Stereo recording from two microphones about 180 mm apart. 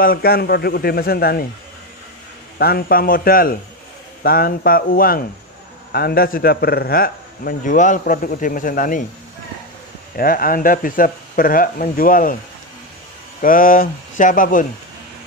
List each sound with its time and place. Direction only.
0.0 s a man's voice: 55° left (ahead or behind)
2.6 s a man's voice: 55° left (ahead or behind)
10.1 s a man's voice: 55° left (ahead or behind)
13.4 s a man's voice: 50° left (ahead or behind)